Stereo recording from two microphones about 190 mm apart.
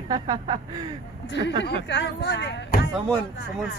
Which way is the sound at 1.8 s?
65° left (ahead or behind).